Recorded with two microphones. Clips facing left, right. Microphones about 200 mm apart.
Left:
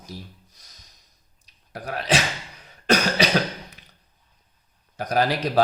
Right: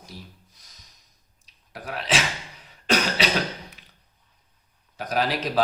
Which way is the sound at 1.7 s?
40° left (ahead or behind).